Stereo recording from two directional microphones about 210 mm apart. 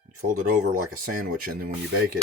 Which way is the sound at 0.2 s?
40° right (ahead or behind).